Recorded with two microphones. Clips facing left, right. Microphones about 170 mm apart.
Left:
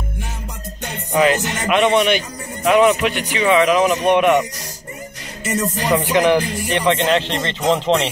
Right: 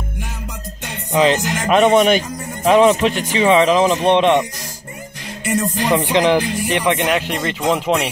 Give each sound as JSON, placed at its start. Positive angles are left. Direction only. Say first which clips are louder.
{"t": 1.1, "sound": "speech", "louder": "right 1 dB", "side_deg": -30}
{"t": 1.8, "sound": "a man's voice", "louder": "right 3 dB", "side_deg": -40}
{"t": 5.9, "sound": "speech", "louder": "even", "side_deg": -20}